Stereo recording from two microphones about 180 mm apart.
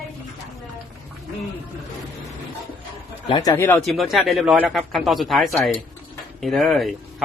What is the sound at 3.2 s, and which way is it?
Speech, 25° left (ahead or behind).